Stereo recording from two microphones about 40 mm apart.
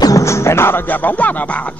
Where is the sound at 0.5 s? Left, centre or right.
Left.